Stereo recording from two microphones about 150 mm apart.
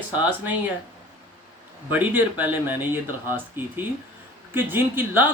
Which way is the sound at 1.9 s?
10° right (ahead or behind).